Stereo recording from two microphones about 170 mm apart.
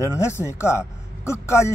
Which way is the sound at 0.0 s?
15° left (ahead or behind).